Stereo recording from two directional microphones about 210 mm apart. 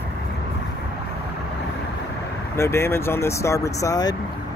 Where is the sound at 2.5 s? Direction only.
10° left (ahead or behind).